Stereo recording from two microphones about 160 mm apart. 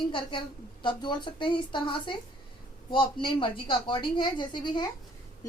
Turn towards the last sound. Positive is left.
turn(degrees=25)  # may be behind; listen again after turning